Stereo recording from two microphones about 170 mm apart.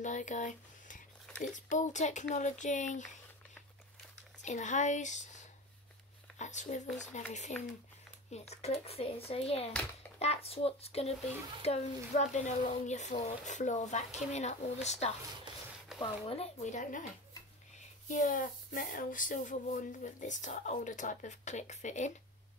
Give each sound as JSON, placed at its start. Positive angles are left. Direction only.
{"t": 0.0, "sound": "speech", "side_deg": 45}
{"t": 4.4, "sound": "speech", "side_deg": 45}
{"t": 6.3, "sound": "a sound", "side_deg": 45}
{"t": 7.1, "sound": "speech", "side_deg": 45}
{"t": 7.5, "sound": "speech", "side_deg": 5}
{"t": 8.3, "sound": "speech", "side_deg": 40}
{"t": 18.0, "sound": "speech", "side_deg": 50}